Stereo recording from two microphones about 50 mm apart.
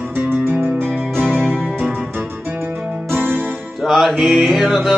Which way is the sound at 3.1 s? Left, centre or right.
Right.